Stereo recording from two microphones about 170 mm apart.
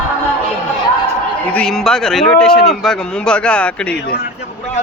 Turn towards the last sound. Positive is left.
turn(degrees=5)  # may be behind; listen again after turning